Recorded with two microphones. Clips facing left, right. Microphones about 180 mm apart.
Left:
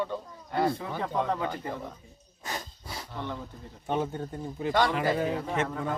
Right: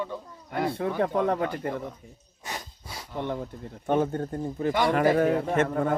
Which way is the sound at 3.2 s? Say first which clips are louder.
Right 7 dB; 55° right (ahead or behind).